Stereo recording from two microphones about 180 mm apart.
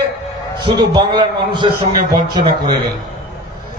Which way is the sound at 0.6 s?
25° right (ahead or behind).